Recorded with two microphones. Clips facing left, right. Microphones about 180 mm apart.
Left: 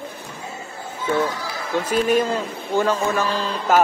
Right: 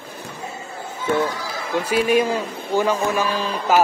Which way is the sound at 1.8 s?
10° right (ahead or behind).